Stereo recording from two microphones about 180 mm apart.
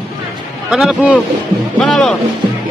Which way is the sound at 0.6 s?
5° right (ahead or behind).